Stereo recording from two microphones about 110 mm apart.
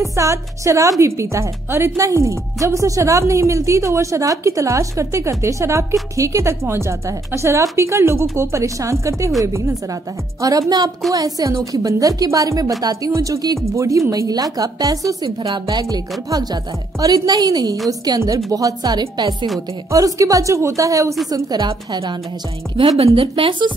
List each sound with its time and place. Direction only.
0.0 s a woman's voice: 30° right (ahead or behind)
11.1 s a woman's voice: 35° right (ahead or behind)
22.8 s a woman's voice: 55° right (ahead or behind)